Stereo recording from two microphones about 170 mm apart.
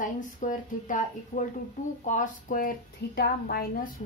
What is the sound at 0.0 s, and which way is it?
A woman's voice, 50° left (ahead or behind).